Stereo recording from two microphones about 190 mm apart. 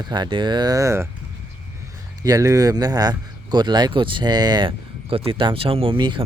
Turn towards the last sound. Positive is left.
turn(degrees=-25)  # may be behind; listen again after turning